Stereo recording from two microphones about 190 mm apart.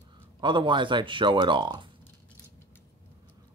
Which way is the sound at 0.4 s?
25° right (ahead or behind).